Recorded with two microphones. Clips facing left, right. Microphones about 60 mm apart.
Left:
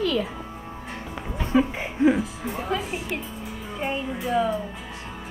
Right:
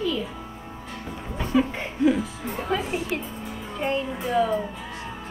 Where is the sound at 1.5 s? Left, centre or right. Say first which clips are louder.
Left 1 dB; centre.